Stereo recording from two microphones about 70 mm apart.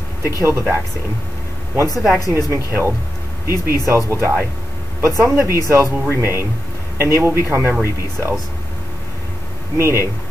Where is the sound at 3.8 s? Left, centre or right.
Right.